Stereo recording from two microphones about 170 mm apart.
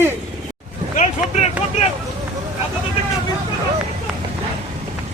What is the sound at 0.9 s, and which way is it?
Speech, 40° left (ahead or behind).